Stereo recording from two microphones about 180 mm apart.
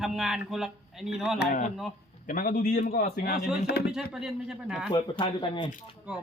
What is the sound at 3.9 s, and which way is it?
Speech, 5° right (ahead or behind).